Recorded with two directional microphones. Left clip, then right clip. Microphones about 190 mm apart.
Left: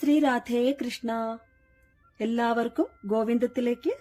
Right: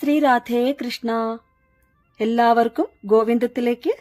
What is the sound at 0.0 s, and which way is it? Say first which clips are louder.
A woman's voice: right 7 dB; 40° right (ahead or behind).